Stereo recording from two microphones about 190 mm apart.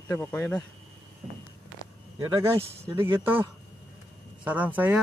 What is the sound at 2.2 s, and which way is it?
Speech, 20° right (ahead or behind).